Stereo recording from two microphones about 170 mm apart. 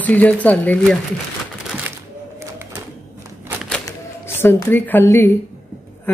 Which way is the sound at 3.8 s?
15° left (ahead or behind).